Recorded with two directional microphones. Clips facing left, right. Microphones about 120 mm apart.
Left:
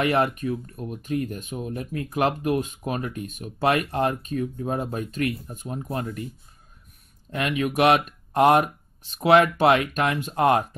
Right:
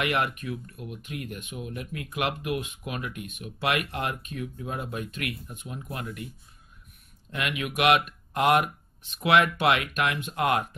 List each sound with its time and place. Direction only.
0.0 s speech: 35° left (ahead or behind)
7.2 s speech: 35° left (ahead or behind)